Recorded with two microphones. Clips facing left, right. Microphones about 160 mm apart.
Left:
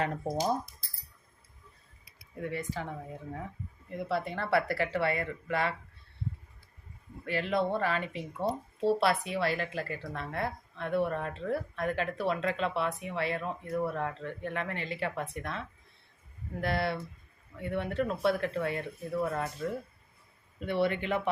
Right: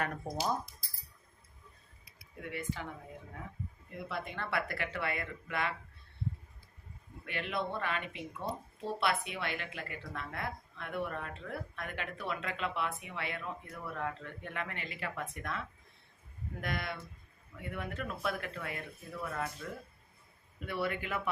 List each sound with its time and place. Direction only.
0.0 s speech: 30° left (ahead or behind)
2.4 s speech: 40° left (ahead or behind)
4.1 s speech: 35° left (ahead or behind)
7.3 s speech: 35° left (ahead or behind)
20.7 s speech: 30° left (ahead or behind)